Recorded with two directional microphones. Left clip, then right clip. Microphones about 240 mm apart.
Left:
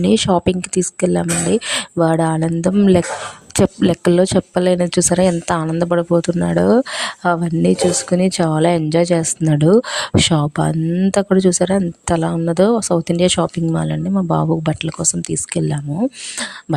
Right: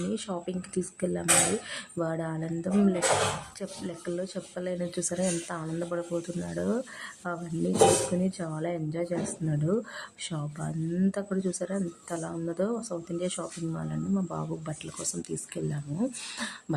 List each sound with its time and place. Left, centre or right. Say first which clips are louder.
0.1 s a woman's voice: left 19 dB; left